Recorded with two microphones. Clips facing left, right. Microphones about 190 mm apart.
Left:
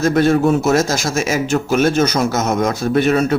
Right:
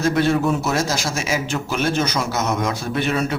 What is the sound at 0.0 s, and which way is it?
A man's voice, 45° left (ahead or behind).